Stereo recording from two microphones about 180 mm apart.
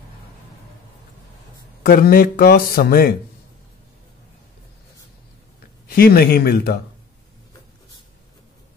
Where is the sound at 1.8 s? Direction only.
55° left (ahead or behind).